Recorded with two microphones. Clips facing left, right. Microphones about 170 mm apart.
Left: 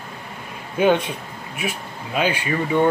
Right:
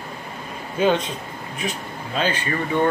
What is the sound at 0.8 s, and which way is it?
Speech, 15° left (ahead or behind).